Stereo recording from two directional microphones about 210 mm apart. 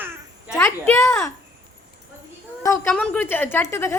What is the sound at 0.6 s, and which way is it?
Speech, 10° left (ahead or behind).